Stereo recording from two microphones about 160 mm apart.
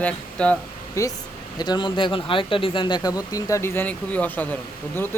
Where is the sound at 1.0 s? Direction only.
20° left (ahead or behind).